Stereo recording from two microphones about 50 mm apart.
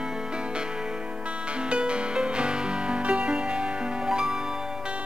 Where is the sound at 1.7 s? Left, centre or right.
Right.